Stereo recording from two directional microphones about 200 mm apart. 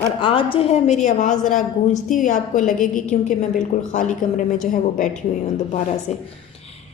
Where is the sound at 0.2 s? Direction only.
25° left (ahead or behind).